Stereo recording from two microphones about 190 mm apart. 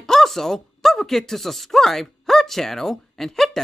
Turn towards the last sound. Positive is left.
turn(degrees=0)  # may be behind; listen again after turning